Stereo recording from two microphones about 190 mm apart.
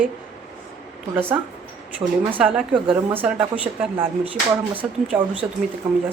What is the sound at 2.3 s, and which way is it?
Speech, 5° right (ahead or behind).